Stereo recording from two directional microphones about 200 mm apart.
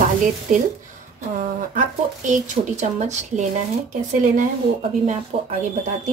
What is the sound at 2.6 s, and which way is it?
Speech, 35° right (ahead or behind).